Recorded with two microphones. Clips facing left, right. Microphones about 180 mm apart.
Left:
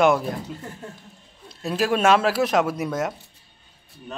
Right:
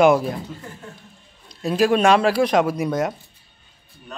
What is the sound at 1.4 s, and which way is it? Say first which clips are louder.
A man's voice: right 5 dB; centre (ahead or behind).